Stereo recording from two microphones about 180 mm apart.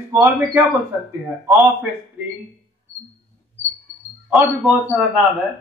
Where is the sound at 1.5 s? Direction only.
Centre (ahead or behind).